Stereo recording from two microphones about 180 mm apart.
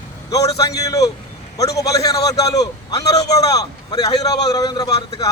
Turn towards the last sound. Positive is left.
turn(degrees=20)  # may be behind; listen again after turning